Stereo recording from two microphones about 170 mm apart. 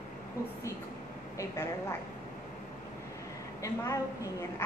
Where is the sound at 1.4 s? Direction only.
15° left (ahead or behind).